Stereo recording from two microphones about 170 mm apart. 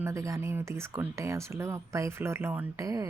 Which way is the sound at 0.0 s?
15° right (ahead or behind).